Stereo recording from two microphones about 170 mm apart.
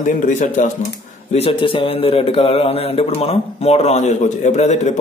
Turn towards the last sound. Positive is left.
turn(degrees=45)  # may be behind; listen again after turning